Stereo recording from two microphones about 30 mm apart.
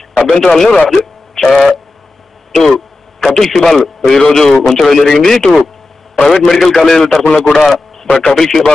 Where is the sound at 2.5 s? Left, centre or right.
Centre.